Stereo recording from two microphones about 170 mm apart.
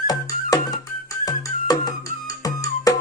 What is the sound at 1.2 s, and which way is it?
Music, 20° left (ahead or behind).